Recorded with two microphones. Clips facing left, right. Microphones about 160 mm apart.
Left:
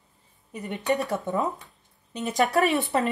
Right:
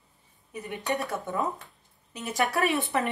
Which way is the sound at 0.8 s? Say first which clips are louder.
Left 5 dB; 20° left (ahead or behind).